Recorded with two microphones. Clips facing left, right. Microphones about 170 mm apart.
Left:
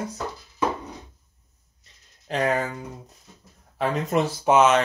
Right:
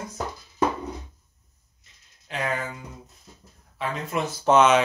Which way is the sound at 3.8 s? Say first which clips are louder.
Left 5 dB; 40° left (ahead or behind).